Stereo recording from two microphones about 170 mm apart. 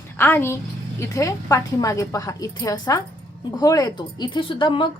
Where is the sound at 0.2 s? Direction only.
10° left (ahead or behind).